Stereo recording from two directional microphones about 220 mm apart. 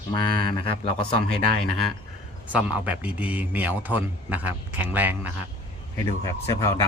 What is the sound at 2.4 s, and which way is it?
A man's voice, 5° right (ahead or behind).